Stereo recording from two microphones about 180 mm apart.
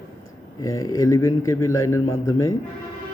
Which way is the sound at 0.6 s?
15° left (ahead or behind).